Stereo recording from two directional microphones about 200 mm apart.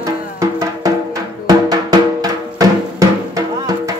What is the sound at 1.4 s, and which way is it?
Music, 20° right (ahead or behind).